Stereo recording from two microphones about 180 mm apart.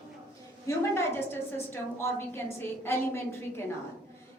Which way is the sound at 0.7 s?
15° left (ahead or behind).